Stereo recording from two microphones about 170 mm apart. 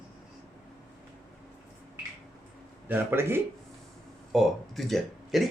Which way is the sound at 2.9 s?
10° right (ahead or behind).